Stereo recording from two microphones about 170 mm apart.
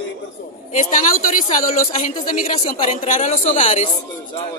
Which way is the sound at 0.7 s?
50° left (ahead or behind).